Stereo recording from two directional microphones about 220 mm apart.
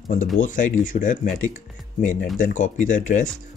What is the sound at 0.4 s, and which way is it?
Speech, 35° left (ahead or behind).